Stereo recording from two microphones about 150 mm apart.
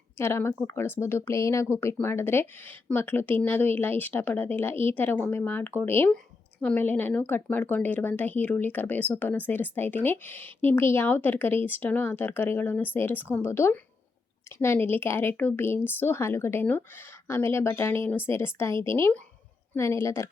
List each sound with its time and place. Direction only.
0.2 s a woman's voice: 15° left (ahead or behind)